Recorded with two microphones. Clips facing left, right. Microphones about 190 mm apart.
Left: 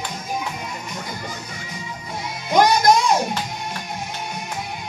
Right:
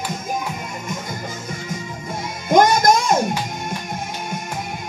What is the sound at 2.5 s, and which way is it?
Music, 50° right (ahead or behind).